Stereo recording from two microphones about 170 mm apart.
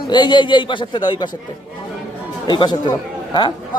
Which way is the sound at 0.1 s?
25° left (ahead or behind).